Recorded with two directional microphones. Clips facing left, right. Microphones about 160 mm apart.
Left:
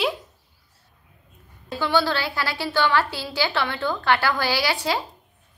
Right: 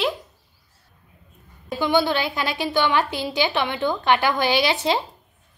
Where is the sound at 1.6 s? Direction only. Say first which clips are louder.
Right 2 dB; 15° right (ahead or behind).